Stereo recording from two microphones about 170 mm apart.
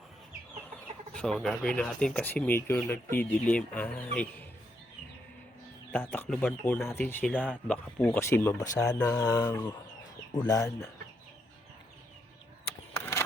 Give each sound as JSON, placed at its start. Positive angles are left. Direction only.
{"t": 1.1, "sound": "speech", "side_deg": 5}
{"t": 5.9, "sound": "speech", "side_deg": 10}
{"t": 12.9, "sound": "a sound", "side_deg": 15}